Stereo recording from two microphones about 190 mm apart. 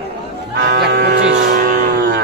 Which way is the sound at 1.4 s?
45° right (ahead or behind).